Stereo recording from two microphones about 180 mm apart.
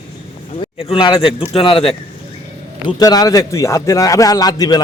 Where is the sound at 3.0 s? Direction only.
20° left (ahead or behind).